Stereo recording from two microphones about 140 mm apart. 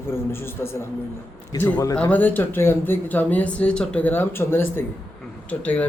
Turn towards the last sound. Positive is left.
turn(degrees=10)  # may be behind; listen again after turning